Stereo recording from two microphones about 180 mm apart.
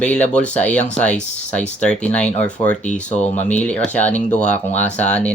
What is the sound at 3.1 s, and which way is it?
Speech, 40° left (ahead or behind).